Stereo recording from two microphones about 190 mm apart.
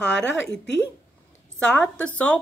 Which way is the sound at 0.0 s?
70° left (ahead or behind).